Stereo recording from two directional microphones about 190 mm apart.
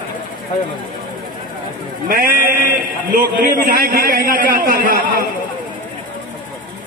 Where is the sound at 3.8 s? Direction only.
50° right (ahead or behind).